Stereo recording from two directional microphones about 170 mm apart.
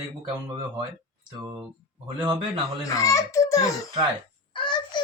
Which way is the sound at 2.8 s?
20° left (ahead or behind).